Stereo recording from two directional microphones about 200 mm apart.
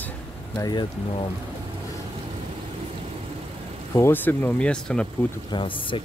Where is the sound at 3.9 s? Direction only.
10° left (ahead or behind).